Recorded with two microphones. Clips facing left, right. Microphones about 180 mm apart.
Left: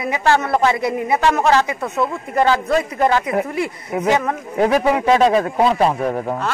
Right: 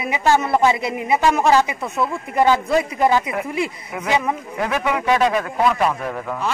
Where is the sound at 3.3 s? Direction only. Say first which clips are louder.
Left 3 dB; 30° left (ahead or behind).